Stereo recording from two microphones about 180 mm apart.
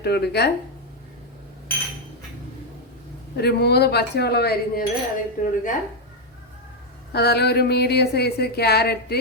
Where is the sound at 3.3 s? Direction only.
65° left (ahead or behind).